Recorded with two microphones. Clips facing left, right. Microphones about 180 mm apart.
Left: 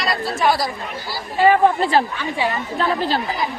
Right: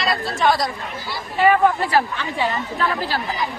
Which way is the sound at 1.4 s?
30° left (ahead or behind).